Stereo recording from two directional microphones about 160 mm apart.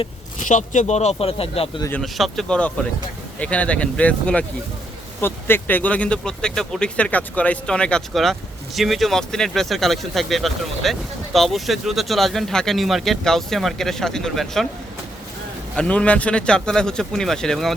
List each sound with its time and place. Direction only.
0.4 s speech: 50° left (ahead or behind)
1.9 s speech: centre (ahead or behind)
15.7 s speech: 5° left (ahead or behind)